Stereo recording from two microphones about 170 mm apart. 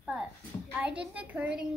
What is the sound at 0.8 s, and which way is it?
Speech, 10° right (ahead or behind).